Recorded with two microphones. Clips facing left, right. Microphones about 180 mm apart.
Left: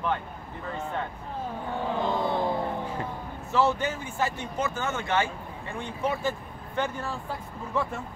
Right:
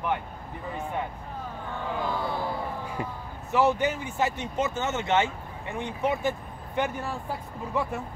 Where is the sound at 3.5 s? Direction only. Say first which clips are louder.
Right 2 dB; 15° right (ahead or behind).